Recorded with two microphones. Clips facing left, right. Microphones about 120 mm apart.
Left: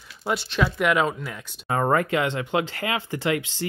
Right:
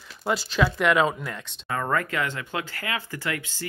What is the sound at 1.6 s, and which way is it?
Speech, 25° left (ahead or behind).